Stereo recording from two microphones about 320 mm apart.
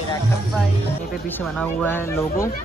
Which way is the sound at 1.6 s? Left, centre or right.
Centre.